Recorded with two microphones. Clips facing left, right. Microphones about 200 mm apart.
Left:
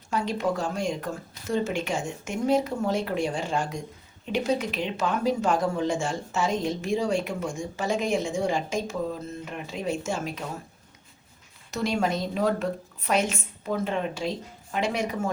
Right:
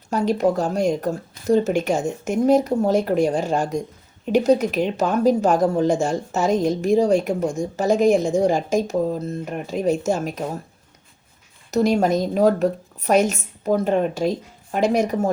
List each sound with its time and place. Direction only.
0.1 s speech: 40° right (ahead or behind)
11.7 s speech: 40° right (ahead or behind)